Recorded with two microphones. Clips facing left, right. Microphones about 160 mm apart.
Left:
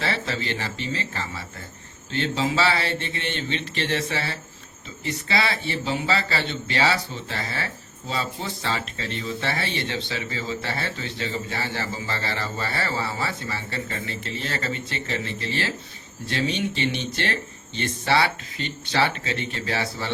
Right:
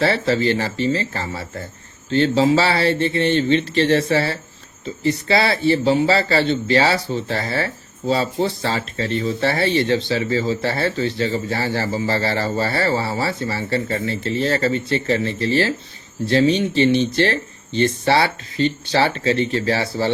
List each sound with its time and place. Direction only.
0.0 s speech: 40° right (ahead or behind)